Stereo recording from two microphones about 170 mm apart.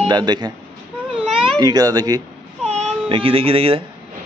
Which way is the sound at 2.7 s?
30° right (ahead or behind).